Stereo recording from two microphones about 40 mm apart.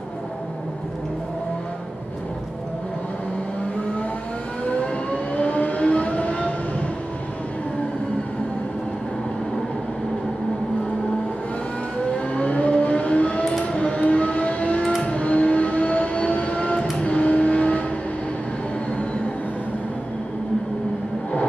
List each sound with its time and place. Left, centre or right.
4.6 s vehicle: left
12.4 s vehicle: left